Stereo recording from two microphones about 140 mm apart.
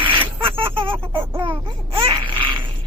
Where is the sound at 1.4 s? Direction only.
35° right (ahead or behind).